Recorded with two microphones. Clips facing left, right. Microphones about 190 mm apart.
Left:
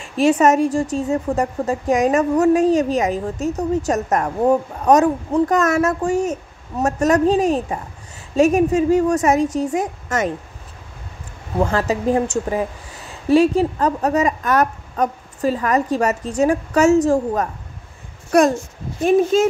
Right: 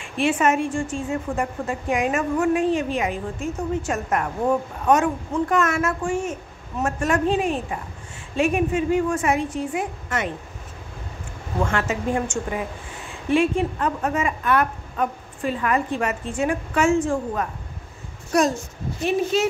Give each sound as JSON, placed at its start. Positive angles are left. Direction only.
{"t": 0.0, "sound": "a woman's voice", "side_deg": 40}
{"t": 11.6, "sound": "a woman's voice", "side_deg": 35}
{"t": 18.3, "sound": "a child's voice", "side_deg": 60}